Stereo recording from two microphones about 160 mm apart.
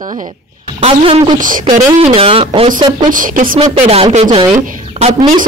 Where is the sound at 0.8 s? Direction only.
35° right (ahead or behind).